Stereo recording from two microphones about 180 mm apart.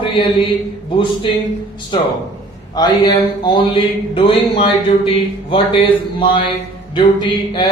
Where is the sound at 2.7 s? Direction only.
20° left (ahead or behind).